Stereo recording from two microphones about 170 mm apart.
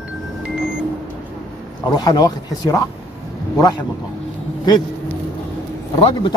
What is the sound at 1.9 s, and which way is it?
A man's voice, 25° left (ahead or behind).